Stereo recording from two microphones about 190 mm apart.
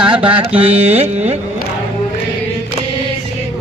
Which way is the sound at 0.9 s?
35° right (ahead or behind).